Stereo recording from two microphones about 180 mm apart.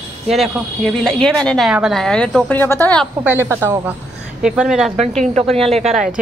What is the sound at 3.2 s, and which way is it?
Speech, 15° right (ahead or behind).